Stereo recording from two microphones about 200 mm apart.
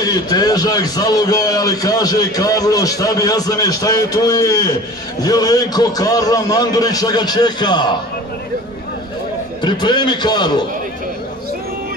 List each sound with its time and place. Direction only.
0.0 s a man's voice: 20° left (ahead or behind)
9.6 s a man's voice: 20° left (ahead or behind)